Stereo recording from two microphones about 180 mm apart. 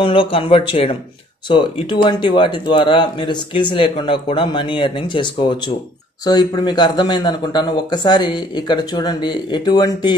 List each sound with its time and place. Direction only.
0.0 s a man's voice: 30° left (ahead or behind)